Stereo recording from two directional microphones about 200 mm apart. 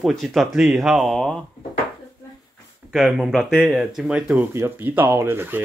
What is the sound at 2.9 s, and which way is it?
Speech, 5° right (ahead or behind).